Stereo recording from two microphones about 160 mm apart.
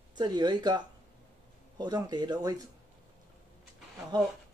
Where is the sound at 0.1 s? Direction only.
25° right (ahead or behind).